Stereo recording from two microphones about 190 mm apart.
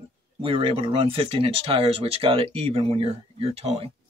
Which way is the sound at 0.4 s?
30° right (ahead or behind).